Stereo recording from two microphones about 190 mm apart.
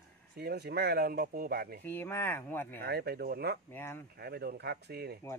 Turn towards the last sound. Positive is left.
turn(degrees=-55)  # may be behind; listen again after turning